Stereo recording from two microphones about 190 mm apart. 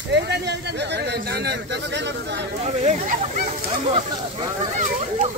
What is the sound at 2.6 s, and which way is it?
Speech, 35° right (ahead or behind).